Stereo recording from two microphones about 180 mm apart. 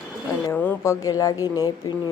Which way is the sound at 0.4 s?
10° left (ahead or behind).